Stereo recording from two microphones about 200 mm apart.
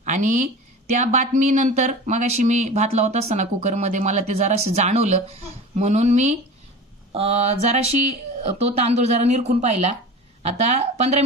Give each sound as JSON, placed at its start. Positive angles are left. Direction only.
{"t": 0.0, "sound": "speech", "side_deg": -40}